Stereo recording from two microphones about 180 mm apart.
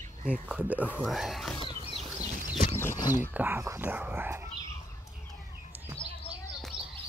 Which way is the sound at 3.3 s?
10° right (ahead or behind).